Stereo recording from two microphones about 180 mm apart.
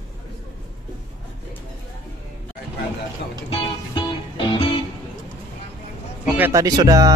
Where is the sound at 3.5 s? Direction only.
25° left (ahead or behind).